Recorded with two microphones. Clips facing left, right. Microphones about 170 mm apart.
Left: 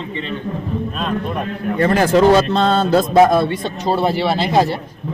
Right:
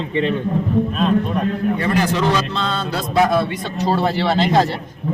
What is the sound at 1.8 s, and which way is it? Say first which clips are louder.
A man's voice: left 10 dB; 50° left (ahead or behind).